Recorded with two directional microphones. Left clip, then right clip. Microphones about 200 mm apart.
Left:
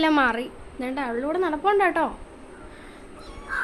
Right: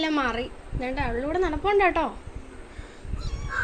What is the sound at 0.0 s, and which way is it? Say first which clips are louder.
A woman's voice: left 5 dB; 25° left (ahead or behind).